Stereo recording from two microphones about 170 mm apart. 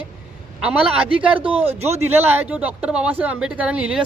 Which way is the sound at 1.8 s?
40° right (ahead or behind).